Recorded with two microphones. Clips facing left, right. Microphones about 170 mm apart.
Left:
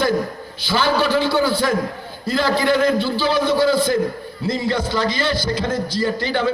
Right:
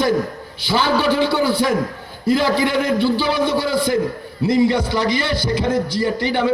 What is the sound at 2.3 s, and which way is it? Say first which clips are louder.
Speech: right 1 dB; 20° right (ahead or behind).